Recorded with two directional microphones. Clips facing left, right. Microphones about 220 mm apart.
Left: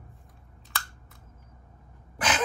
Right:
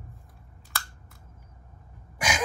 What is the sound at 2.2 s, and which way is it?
Gasp, 10° right (ahead or behind).